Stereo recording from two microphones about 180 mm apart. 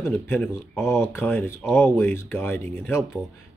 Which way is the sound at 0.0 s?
10° left (ahead or behind).